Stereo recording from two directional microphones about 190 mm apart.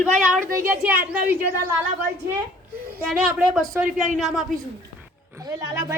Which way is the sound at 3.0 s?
5° right (ahead or behind).